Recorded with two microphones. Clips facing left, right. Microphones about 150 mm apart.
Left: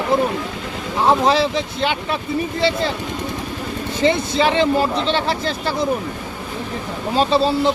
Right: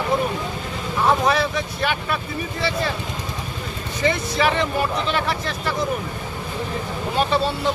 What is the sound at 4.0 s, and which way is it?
Speech, 25° left (ahead or behind).